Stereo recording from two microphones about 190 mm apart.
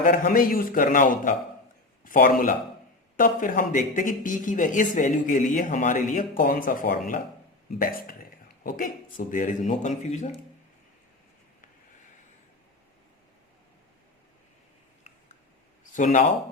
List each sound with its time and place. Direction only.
0.0 s a man's voice: 45° left (ahead or behind)
16.0 s speech: 40° left (ahead or behind)